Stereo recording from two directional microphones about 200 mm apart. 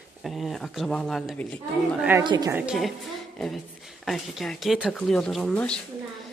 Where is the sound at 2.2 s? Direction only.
25° right (ahead or behind).